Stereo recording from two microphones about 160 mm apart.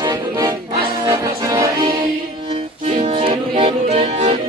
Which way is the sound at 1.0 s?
20° right (ahead or behind).